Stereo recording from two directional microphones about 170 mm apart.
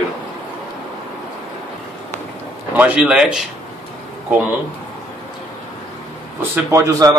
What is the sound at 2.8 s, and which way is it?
Speech, 5° right (ahead or behind).